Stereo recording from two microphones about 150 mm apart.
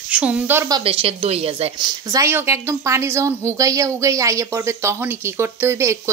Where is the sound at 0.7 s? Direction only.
35° right (ahead or behind).